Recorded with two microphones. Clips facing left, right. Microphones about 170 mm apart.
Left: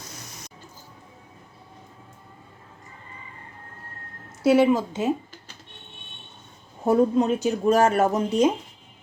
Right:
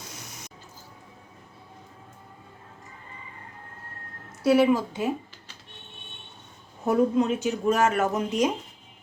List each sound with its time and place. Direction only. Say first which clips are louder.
4.4 s a woman's voice: left 2 dB; 25° left (ahead or behind)
6.8 s speech: left 3 dB; 30° left (ahead or behind)